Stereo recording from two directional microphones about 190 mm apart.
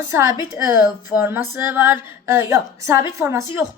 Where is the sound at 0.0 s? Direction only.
15° right (ahead or behind).